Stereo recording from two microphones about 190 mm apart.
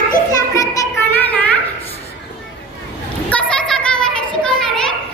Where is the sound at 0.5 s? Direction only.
15° left (ahead or behind).